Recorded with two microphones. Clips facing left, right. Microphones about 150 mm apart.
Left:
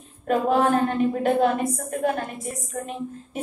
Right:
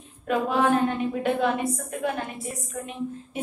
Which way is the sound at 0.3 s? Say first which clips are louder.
Left 2 dB; 40° left (ahead or behind).